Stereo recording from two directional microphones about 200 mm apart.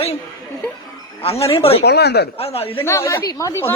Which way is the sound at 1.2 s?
30° left (ahead or behind).